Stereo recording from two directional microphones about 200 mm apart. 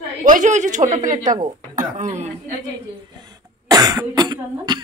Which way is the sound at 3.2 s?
20° right (ahead or behind).